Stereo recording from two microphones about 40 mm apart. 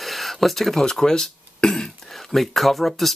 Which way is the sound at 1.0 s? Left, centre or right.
Centre.